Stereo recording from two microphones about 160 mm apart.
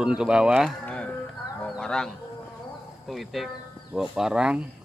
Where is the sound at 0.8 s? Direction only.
5° left (ahead or behind).